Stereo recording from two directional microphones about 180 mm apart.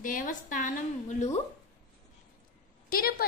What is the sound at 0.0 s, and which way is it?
A woman's voice, 50° left (ahead or behind).